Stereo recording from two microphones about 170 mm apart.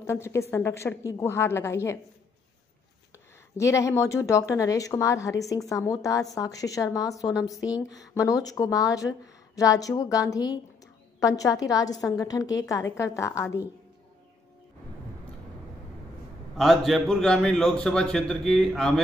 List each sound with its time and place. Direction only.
0.0 s a woman's voice: 15° left (ahead or behind)
3.5 s a woman's voice: 15° left (ahead or behind)
16.5 s a man's voice: centre (ahead or behind)